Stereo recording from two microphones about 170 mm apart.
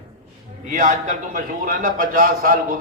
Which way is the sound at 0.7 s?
45° right (ahead or behind).